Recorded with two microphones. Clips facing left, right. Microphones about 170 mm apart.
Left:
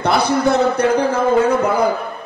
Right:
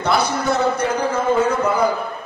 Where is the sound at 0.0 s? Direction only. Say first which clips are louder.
Left 4 dB; 60° left (ahead or behind).